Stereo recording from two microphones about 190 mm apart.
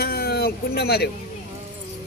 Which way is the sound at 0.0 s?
55° left (ahead or behind).